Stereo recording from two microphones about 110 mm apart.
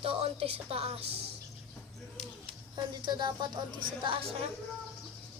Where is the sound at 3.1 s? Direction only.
40° right (ahead or behind).